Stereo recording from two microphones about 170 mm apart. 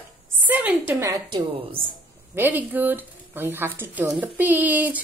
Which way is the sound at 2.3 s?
10° right (ahead or behind).